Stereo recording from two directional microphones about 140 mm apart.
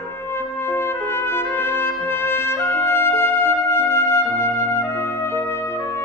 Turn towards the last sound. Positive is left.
turn(degrees=20)  # may be behind; listen again after turning